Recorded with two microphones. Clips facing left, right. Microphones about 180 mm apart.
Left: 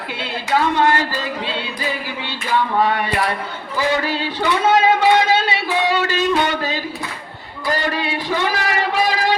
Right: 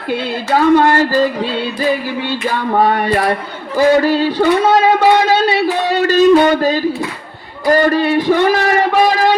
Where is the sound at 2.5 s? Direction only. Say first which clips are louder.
Right 2 dB; 45° right (ahead or behind).